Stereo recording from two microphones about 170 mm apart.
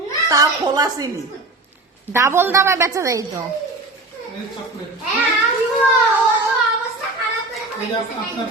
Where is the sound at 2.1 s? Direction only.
15° right (ahead or behind).